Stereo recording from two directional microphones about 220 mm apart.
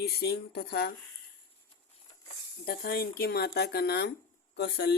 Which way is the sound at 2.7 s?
45° left (ahead or behind).